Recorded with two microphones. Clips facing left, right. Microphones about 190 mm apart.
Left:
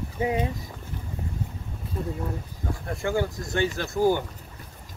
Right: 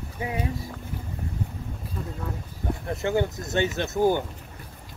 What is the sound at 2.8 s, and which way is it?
Speech, 20° right (ahead or behind).